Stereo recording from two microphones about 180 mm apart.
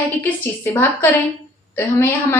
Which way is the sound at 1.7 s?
10° left (ahead or behind).